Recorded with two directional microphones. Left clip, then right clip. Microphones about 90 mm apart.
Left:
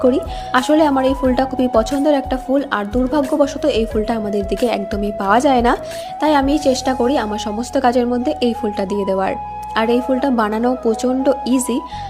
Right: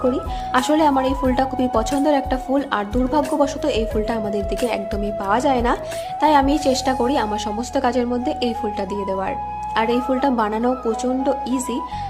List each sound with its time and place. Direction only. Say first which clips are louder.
0.0 s speech: left 5 dB; 50° left (ahead or behind)
0.7 s speech: left 3 dB; 30° left (ahead or behind); by 5.8 s 50° left (ahead or behind)
6.2 s speech: left 1 dB; 30° left (ahead or behind)
7.7 s speech: left 5 dB; 40° left (ahead or behind)
9.7 s speech: left 3 dB; 30° left (ahead or behind)
10.4 s speech: left 3 dB; 35° left (ahead or behind)